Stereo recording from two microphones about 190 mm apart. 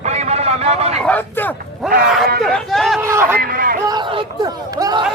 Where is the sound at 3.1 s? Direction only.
15° right (ahead or behind).